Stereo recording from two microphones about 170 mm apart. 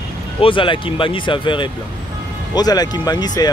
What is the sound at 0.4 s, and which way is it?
Speech, 30° left (ahead or behind).